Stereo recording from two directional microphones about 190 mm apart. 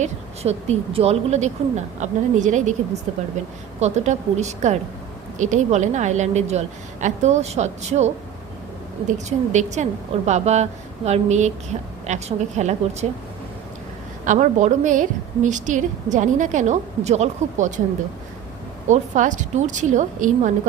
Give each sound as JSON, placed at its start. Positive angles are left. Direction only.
{"t": 0.0, "sound": "a woman's voice", "side_deg": -35}
{"t": 14.3, "sound": "a woman's voice", "side_deg": -40}
{"t": 18.9, "sound": "a woman's voice", "side_deg": -40}